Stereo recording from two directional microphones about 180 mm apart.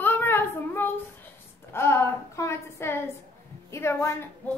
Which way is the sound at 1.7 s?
15° left (ahead or behind).